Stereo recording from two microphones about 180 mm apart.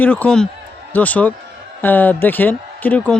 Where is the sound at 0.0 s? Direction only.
10° left (ahead or behind).